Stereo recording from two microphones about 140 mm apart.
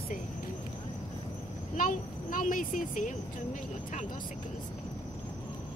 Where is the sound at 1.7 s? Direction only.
75° left (ahead or behind).